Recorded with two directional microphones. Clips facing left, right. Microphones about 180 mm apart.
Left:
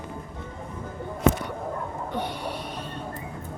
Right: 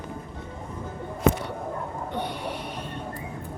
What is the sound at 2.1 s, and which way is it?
Snort, 20° right (ahead or behind).